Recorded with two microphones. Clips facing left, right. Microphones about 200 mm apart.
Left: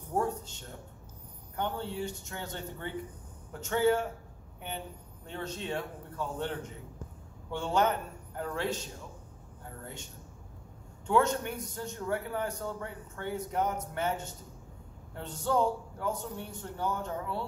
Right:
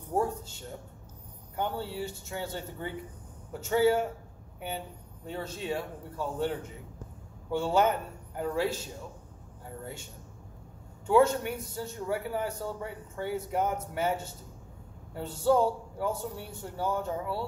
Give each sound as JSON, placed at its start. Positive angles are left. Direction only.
{"t": 0.1, "sound": "a man's voice", "side_deg": -10}
{"t": 11.1, "sound": "a man's voice", "side_deg": -10}